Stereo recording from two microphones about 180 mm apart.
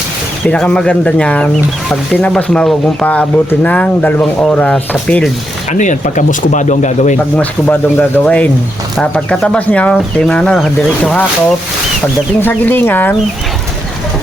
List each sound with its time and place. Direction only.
0.4 s speech: 5° left (ahead or behind)
5.7 s speech: 45° left (ahead or behind)
7.3 s speech: 10° left (ahead or behind)